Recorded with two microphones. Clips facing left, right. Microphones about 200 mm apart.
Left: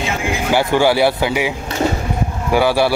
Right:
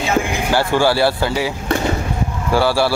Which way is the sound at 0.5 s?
15° left (ahead or behind).